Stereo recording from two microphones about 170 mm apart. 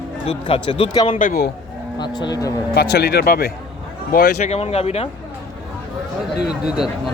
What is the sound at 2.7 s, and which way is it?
A man's voice, 70° left (ahead or behind).